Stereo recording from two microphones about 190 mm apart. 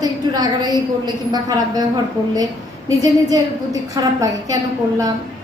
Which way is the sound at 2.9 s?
20° right (ahead or behind).